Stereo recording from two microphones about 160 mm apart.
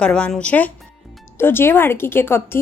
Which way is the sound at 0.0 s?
5° left (ahead or behind).